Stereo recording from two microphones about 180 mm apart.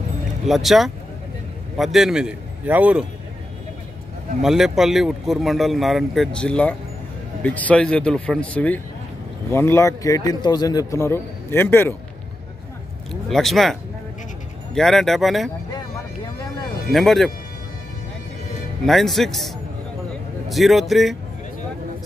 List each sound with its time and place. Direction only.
0.5 s speech: centre (ahead or behind)
4.4 s a man's voice: centre (ahead or behind); by 11.9 s 15° left (ahead or behind)
13.1 s speech: centre (ahead or behind)
16.9 s speech: centre (ahead or behind)
18.9 s speech: centre (ahead or behind)